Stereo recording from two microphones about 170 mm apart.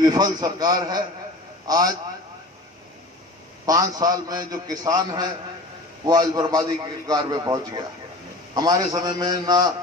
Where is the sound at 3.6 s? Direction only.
20° right (ahead or behind).